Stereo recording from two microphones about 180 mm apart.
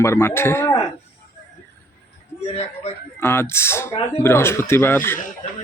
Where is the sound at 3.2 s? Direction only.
15° left (ahead or behind).